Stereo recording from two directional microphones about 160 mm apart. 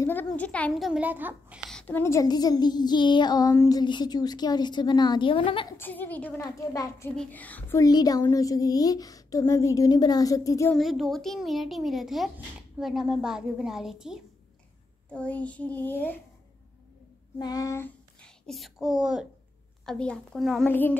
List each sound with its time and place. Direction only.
0.0 s a child's voice: 10° left (ahead or behind); by 1.6 s 10° right (ahead or behind)
1.7 s speech: 10° left (ahead or behind); by 5.8 s 30° left (ahead or behind)
5.8 s a child's voice: 10° left (ahead or behind)
6.4 s speech: 20° left (ahead or behind)
7.2 s a child's voice: 10° left (ahead or behind)
7.8 s speech: 25° left (ahead or behind)
10.7 s a child's voice: centre (ahead or behind)
15.1 s a child's voice: 10° left (ahead or behind)
17.4 s a child's voice: 25° left (ahead or behind); by 20.7 s centre (ahead or behind)